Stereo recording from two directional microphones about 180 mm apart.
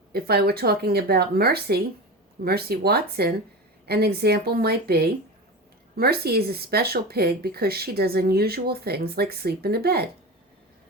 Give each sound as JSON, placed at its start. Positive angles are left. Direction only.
{"t": 0.1, "sound": "speech", "side_deg": -60}